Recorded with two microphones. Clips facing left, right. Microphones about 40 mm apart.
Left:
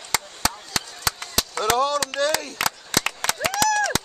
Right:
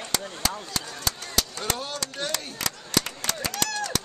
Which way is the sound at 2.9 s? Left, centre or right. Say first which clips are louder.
Left 3 dB; left.